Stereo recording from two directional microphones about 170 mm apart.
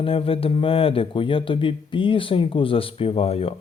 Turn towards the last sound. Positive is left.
turn(degrees=35)  # may be behind; listen again after turning